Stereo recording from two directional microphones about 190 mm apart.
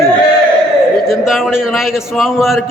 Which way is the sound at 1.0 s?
Centre (ahead or behind).